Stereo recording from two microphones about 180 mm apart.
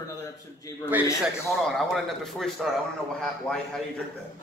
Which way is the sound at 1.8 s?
Centre (ahead or behind).